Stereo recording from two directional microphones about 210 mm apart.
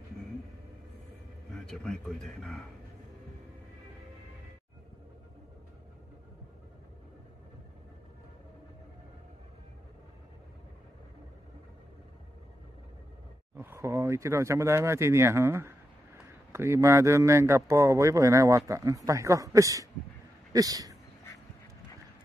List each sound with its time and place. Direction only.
1.5 s a man's voice: 5° left (ahead or behind)
13.6 s speech: 10° right (ahead or behind)